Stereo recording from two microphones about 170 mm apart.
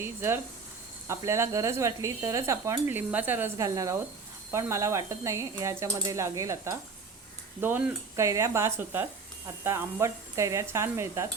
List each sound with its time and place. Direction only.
0.0 s speech: 15° right (ahead or behind)